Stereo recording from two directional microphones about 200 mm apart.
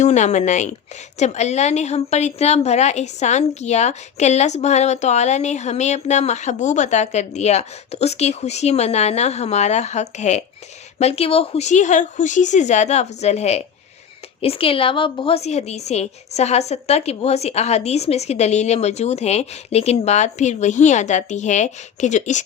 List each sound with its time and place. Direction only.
0.0 s a woman's voice: 35° left (ahead or behind)